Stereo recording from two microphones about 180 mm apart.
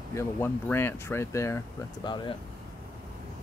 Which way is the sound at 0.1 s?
15° left (ahead or behind).